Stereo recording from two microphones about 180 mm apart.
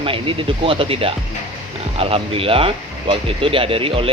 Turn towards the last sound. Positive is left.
turn(degrees=-30)  # may be behind; listen again after turning